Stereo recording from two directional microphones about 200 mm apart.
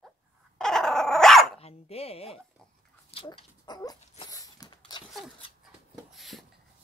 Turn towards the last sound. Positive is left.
turn(degrees=0)  # may be behind; listen again after turning